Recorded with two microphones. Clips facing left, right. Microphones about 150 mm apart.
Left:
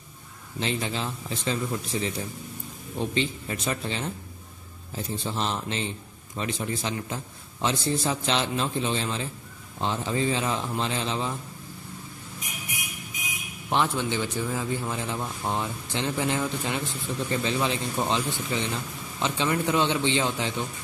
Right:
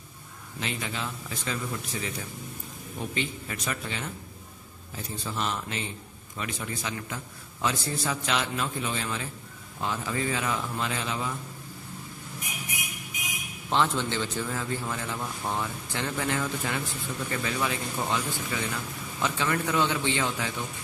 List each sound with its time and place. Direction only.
0.6 s a man's voice: 30° left (ahead or behind)
13.7 s a man's voice: 15° left (ahead or behind)